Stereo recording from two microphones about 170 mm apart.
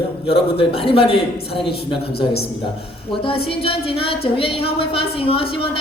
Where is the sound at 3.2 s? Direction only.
35° left (ahead or behind).